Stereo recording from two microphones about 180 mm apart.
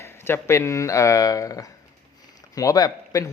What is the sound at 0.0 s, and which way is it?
A man's voice, 15° left (ahead or behind).